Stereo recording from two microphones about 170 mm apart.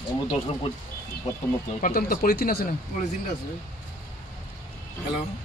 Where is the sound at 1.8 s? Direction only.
55° left (ahead or behind).